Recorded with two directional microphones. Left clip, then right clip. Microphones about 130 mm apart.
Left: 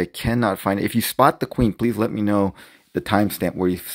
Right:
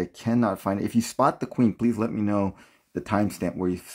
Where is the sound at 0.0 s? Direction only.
20° left (ahead or behind).